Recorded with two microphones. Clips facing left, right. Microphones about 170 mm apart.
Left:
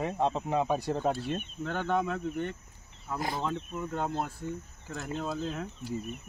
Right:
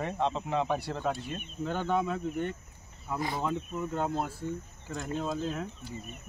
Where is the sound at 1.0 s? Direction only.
35° left (ahead or behind).